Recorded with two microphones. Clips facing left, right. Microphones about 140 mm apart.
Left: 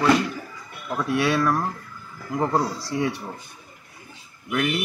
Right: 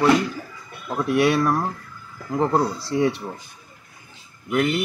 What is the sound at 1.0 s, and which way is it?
Speech, 25° right (ahead or behind).